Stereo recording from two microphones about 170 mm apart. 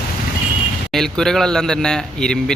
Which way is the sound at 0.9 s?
Centre (ahead or behind).